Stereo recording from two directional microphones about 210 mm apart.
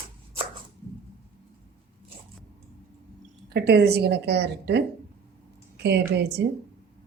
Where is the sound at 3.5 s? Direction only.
50° right (ahead or behind).